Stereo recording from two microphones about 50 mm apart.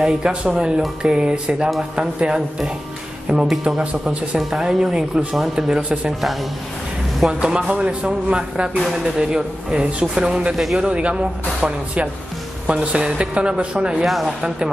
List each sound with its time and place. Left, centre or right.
0.0 s speech: centre
4.4 s speech: centre
5.7 s speech: right
7.2 s speech: centre
10.5 s speech: centre
10.8 s speech: right
14.0 s speech: centre